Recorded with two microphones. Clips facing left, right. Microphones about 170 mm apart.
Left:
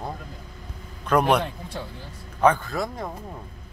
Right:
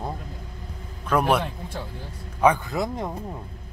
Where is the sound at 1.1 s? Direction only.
5° right (ahead or behind).